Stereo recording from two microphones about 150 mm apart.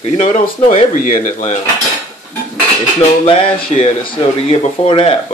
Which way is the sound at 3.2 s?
40° left (ahead or behind).